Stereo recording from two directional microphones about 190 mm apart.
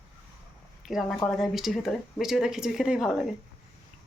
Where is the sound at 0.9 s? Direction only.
Centre (ahead or behind).